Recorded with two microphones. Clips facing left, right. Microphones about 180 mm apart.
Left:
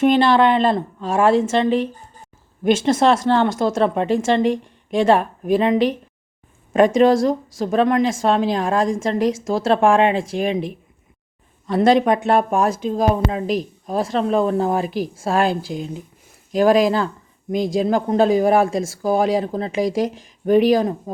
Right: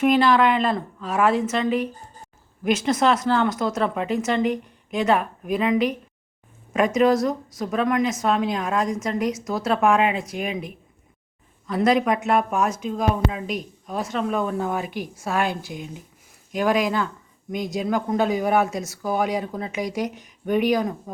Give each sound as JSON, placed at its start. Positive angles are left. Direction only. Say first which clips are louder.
{"t": 0.0, "sound": "speech", "louder": "left 3 dB", "side_deg": 30}
{"t": 11.7, "sound": "speech", "louder": "left 5 dB", "side_deg": 30}